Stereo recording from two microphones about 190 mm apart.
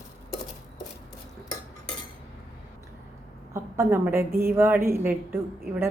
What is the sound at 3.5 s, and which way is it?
A woman's voice, 15° right (ahead or behind).